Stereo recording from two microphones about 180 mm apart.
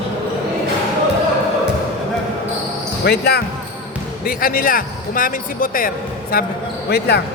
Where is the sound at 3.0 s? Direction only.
60° left (ahead or behind).